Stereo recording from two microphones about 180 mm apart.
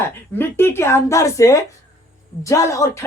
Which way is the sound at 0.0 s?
15° left (ahead or behind).